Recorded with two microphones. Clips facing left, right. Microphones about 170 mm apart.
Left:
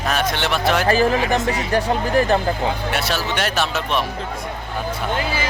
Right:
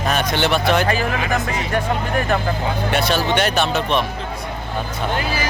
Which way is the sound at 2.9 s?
5° left (ahead or behind).